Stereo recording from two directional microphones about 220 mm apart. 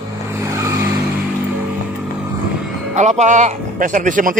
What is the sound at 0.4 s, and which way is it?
Vehicle, 15° right (ahead or behind).